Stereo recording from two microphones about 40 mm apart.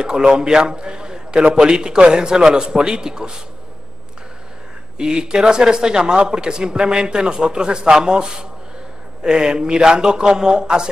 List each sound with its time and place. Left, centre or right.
0.3 s a man's voice: right
4.9 s a man's voice: right